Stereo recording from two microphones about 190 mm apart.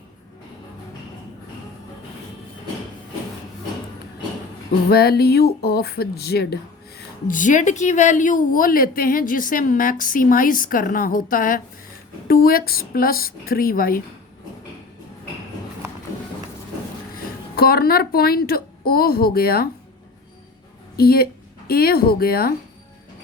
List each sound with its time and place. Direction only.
4.9 s speech: 55° left (ahead or behind)
17.2 s a woman's voice: 55° left (ahead or behind)
20.9 s speech: 55° left (ahead or behind)